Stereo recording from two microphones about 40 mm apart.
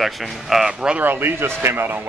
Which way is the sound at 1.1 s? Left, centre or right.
Right.